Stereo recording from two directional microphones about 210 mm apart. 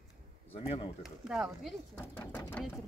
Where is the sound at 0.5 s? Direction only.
25° left (ahead or behind).